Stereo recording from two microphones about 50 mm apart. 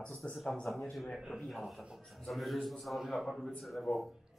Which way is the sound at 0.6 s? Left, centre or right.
Centre.